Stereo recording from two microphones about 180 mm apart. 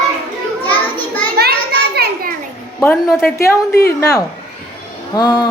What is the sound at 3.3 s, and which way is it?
A woman's voice, 15° left (ahead or behind).